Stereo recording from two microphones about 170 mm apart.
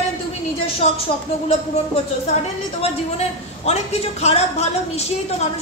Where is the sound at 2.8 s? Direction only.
40° left (ahead or behind).